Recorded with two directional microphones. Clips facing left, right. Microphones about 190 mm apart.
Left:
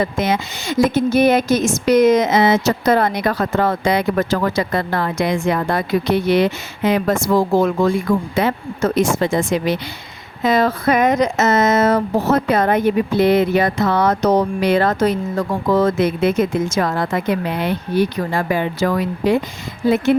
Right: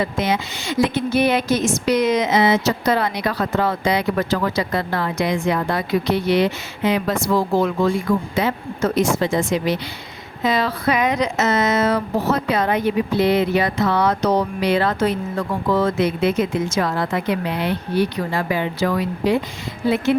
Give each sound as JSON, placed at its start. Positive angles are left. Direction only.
{"t": 0.0, "sound": "speech", "side_deg": 45}